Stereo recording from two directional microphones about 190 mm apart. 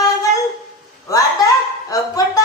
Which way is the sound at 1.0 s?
20° left (ahead or behind).